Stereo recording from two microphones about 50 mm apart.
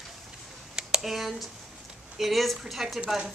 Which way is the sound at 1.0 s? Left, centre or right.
Centre.